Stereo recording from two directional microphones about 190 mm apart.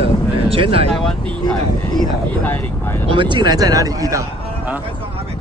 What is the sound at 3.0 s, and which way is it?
Speech, 25° right (ahead or behind).